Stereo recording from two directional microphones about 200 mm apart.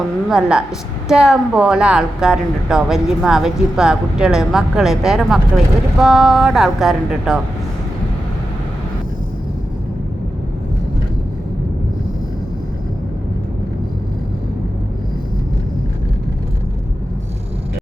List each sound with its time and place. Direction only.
0.3 s a woman's voice: 5° right (ahead or behind)